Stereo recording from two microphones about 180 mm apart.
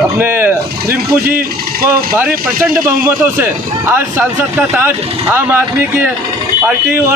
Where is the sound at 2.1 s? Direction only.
10° right (ahead or behind).